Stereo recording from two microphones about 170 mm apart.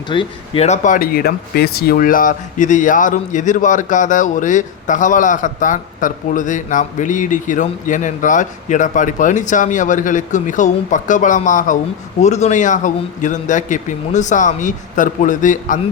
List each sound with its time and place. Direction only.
0.1 s speech: 30° left (ahead or behind); by 15.8 s 50° left (ahead or behind)